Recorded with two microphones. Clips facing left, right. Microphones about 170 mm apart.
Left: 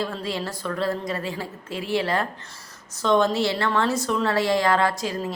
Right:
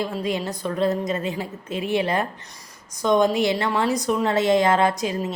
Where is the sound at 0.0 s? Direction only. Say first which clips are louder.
Right 3 dB; 15° right (ahead or behind).